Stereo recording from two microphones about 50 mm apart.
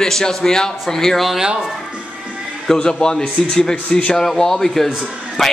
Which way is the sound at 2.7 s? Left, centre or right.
Centre.